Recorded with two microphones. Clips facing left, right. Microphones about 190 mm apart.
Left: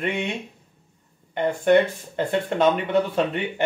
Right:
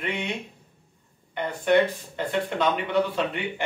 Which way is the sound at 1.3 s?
50° left (ahead or behind).